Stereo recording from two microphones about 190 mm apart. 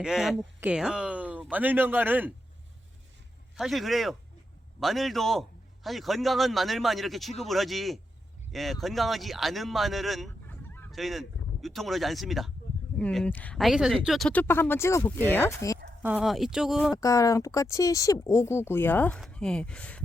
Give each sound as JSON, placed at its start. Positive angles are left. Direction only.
{"t": 0.0, "sound": "a man's voice", "side_deg": 0}
{"t": 3.5, "sound": "a man's voice", "side_deg": 0}
{"t": 16.0, "sound": "a man's voice", "side_deg": -5}
{"t": 16.9, "sound": "a man's voice", "side_deg": 20}